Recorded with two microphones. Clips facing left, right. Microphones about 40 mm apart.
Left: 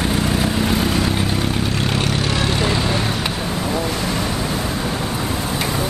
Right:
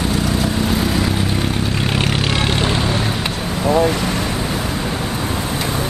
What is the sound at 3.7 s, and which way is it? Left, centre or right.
Ocean, right.